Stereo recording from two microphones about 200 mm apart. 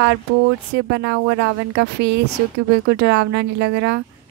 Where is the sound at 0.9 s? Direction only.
60° right (ahead or behind).